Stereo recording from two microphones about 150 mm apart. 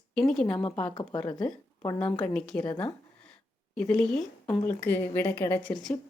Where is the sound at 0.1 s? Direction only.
5° left (ahead or behind).